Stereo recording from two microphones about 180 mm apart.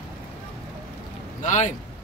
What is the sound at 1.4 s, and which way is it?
Speech, 45° left (ahead or behind).